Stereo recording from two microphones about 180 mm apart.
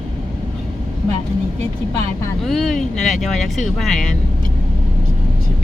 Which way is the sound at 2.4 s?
Centre (ahead or behind).